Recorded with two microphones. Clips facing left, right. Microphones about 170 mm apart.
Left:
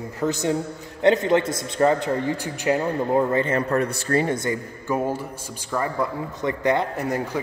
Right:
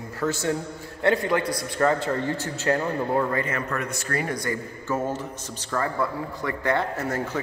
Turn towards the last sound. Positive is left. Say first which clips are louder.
# left 2 dB
turn(degrees=15)  # may be behind; listen again after turning